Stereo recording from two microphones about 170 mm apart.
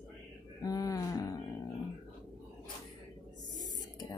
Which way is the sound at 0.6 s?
20° left (ahead or behind).